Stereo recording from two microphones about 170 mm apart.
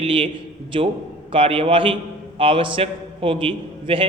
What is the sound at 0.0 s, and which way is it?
A man's voice, 30° right (ahead or behind).